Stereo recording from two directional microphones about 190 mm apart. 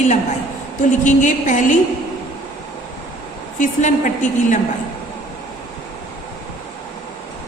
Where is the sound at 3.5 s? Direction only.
40° left (ahead or behind).